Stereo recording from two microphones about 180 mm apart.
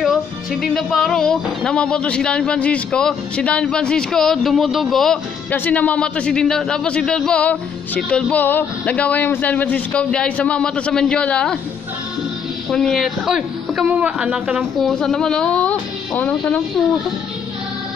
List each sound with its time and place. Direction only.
0.0 s speech: centre (ahead or behind)
12.6 s speech: centre (ahead or behind)